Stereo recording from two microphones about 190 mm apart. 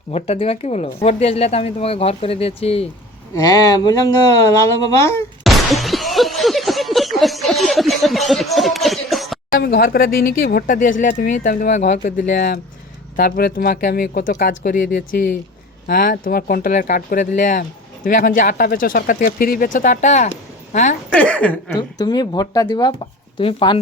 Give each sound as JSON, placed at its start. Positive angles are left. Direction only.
{"t": 0.1, "sound": "speech", "side_deg": 35}
{"t": 3.3, "sound": "speech", "side_deg": 20}
{"t": 5.4, "sound": "a sound", "side_deg": 0}
{"t": 9.5, "sound": "speech", "side_deg": 50}
{"t": 21.1, "sound": "speech", "side_deg": 5}
{"t": 21.8, "sound": "speech", "side_deg": 20}